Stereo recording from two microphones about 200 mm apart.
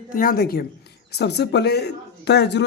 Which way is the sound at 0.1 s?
45° left (ahead or behind).